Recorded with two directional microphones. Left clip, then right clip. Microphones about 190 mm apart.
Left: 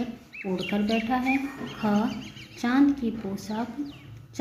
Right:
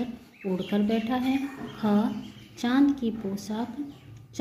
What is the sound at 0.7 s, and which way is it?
Speech, 15° right (ahead or behind).